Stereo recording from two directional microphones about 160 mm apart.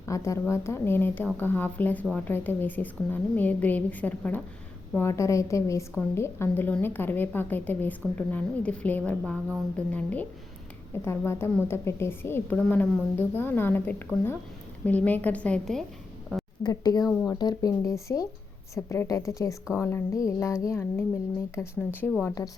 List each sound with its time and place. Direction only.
0.0 s a woman's voice: 20° left (ahead or behind)
16.3 s a sound: 5° left (ahead or behind)
16.6 s a woman's voice: 25° left (ahead or behind)